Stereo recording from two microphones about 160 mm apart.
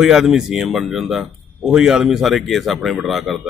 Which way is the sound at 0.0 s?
5° right (ahead or behind).